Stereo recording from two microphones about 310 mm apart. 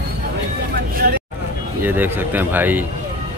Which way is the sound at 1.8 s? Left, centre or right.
Centre.